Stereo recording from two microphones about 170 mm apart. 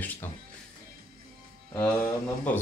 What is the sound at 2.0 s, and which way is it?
Speech, 10° left (ahead or behind).